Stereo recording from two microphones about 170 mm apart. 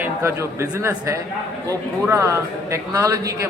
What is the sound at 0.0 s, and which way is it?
A man's voice, 15° right (ahead or behind).